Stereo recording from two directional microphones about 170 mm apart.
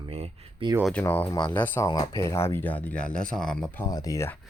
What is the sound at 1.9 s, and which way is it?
Speech, 25° left (ahead or behind).